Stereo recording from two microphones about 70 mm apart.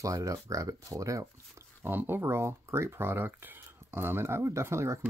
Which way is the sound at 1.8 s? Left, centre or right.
Right.